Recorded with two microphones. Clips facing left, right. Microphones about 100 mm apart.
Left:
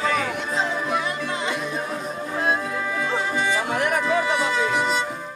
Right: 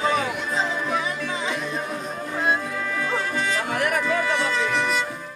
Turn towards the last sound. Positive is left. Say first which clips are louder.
# left 1 dB
turn(degrees=15)  # may be behind; listen again after turning